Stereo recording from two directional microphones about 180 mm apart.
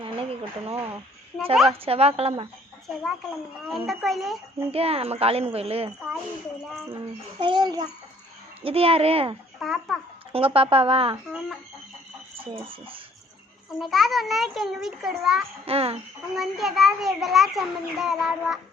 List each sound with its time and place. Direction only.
0.0 s a sound: 30° right (ahead or behind)
1.8 s speech: 35° right (ahead or behind)
2.8 s a child's voice: centre (ahead or behind)
4.7 s speech: 35° right (ahead or behind)
7.3 s a child's voice: 25° right (ahead or behind)
9.6 s a child's voice: centre (ahead or behind)
10.3 s speech: 30° right (ahead or behind)
13.7 s a child's voice: centre (ahead or behind)
15.6 s speech: 35° right (ahead or behind)
16.3 s a child's voice: centre (ahead or behind)